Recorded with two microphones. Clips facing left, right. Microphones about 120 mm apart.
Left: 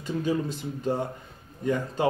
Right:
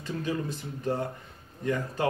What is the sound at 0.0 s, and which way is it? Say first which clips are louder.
Speech: left 4 dB; 20° left (ahead or behind).